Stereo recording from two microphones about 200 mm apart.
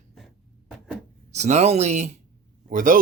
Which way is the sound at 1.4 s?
35° right (ahead or behind).